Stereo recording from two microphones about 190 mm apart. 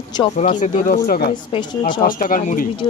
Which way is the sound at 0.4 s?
40° left (ahead or behind).